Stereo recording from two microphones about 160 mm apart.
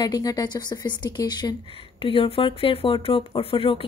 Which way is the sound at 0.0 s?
25° left (ahead or behind).